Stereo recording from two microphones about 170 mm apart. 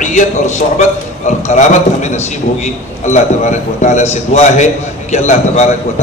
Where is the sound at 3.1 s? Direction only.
45° left (ahead or behind).